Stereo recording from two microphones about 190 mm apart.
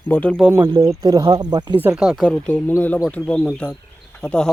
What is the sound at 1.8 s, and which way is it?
Speech, 5° right (ahead or behind).